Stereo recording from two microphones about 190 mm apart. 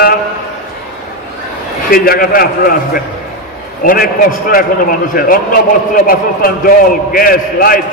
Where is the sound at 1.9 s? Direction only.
50° left (ahead or behind).